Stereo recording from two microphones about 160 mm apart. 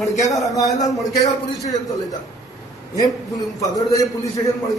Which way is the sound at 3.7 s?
20° left (ahead or behind).